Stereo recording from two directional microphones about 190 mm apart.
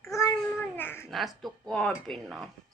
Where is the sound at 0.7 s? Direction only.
10° left (ahead or behind).